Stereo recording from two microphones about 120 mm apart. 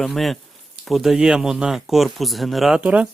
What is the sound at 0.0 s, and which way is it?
Speech, centre (ahead or behind).